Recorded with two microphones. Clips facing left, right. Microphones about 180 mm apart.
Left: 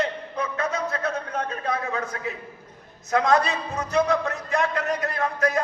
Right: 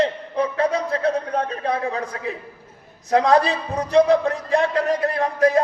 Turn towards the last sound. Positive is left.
turn(degrees=-30)  # may be behind; listen again after turning